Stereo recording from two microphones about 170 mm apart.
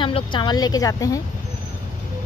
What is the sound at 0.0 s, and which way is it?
Speech, 30° left (ahead or behind).